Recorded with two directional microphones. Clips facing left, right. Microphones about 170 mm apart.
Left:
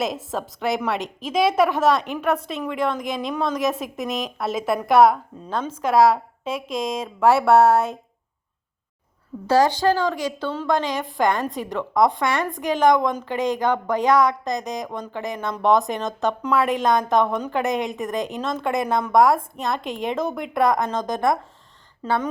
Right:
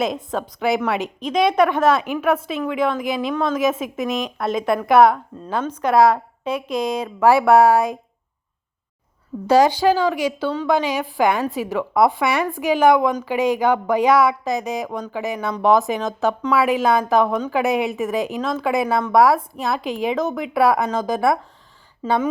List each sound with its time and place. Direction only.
0.0 s a woman's voice: centre (ahead or behind)
9.5 s a woman's voice: 10° right (ahead or behind)
22.0 s speech: 15° right (ahead or behind)